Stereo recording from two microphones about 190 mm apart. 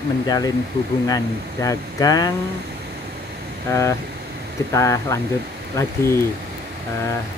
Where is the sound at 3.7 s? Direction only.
15° left (ahead or behind).